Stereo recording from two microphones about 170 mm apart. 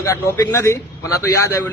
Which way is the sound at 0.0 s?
20° left (ahead or behind).